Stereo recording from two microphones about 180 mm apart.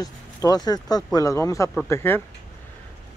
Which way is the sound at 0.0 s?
20° left (ahead or behind).